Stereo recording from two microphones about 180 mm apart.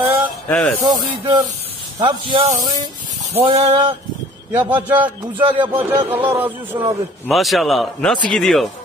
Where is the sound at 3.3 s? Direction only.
35° right (ahead or behind).